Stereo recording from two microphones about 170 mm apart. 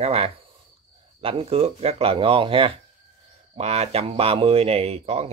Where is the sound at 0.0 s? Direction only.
35° right (ahead or behind).